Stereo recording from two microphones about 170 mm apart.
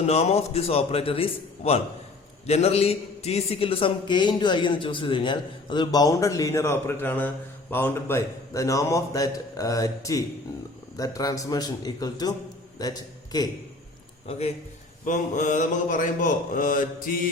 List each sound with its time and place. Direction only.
0.0 s a man's voice: 35° left (ahead or behind); by 13.5 s 20° left (ahead or behind)
14.3 s a man's voice: 40° left (ahead or behind)
15.0 s a sound: 50° left (ahead or behind)